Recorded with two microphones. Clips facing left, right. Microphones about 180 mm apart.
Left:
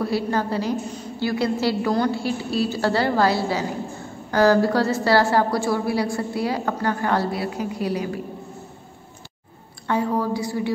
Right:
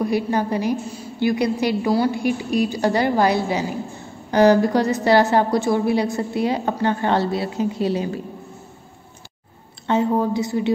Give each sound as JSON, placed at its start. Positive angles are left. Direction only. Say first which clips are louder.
{"t": 0.0, "sound": "a woman's voice", "louder": "right 2 dB", "side_deg": -15}
{"t": 9.8, "sound": "a woman's voice", "louder": "right 3 dB", "side_deg": -20}